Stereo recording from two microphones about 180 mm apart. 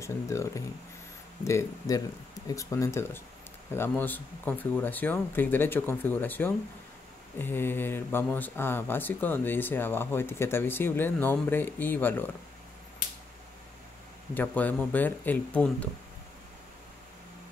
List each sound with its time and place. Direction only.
0.0 s speech: 15° left (ahead or behind)
14.3 s speech: 10° left (ahead or behind)